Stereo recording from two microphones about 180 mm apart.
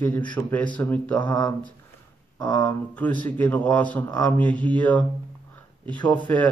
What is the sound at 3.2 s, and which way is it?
Speech, 10° left (ahead or behind).